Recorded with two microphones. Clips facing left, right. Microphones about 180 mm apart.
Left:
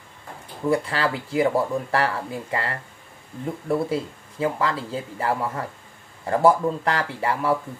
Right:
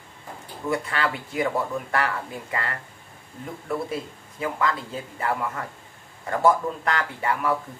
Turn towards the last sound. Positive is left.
turn(degrees=30)  # may be behind; listen again after turning